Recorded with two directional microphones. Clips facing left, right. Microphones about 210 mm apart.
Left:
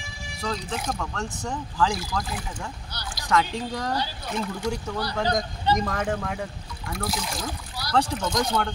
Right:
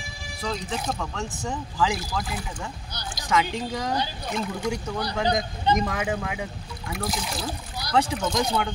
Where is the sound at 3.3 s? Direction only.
Centre (ahead or behind).